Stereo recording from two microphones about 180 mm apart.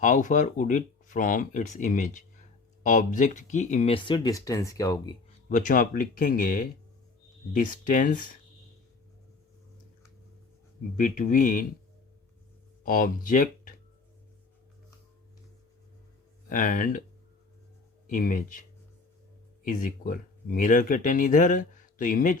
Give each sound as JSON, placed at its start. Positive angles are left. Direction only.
{"t": 0.0, "sound": "speech", "side_deg": 45}
{"t": 3.9, "sound": "speech", "side_deg": 25}
{"t": 5.5, "sound": "speech", "side_deg": 50}
{"t": 10.9, "sound": "speech", "side_deg": 45}
{"t": 12.8, "sound": "speech", "side_deg": 50}
{"t": 16.5, "sound": "speech", "side_deg": 50}
{"t": 18.1, "sound": "speech", "side_deg": 50}
{"t": 19.6, "sound": "speech", "side_deg": 50}